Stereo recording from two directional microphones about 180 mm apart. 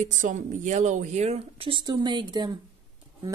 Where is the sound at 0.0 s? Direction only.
45° right (ahead or behind).